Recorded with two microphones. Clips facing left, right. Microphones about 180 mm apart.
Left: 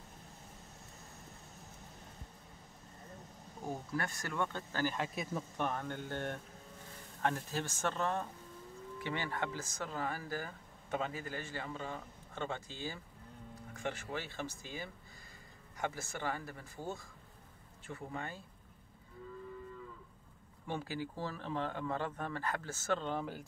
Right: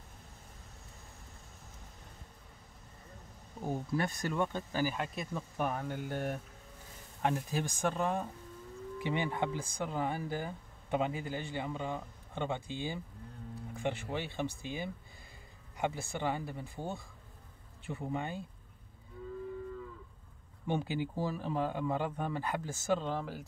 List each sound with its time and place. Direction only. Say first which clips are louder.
3.6 s speech: right 5 dB; 20° right (ahead or behind)
4.9 s speech: even; centre (ahead or behind); by 12.6 s 15° right (ahead or behind)
13.7 s speech: right 4 dB; 15° right (ahead or behind)
20.6 s speech: right 6 dB; 20° right (ahead or behind)
22.9 s speech: right 2 dB; centre (ahead or behind)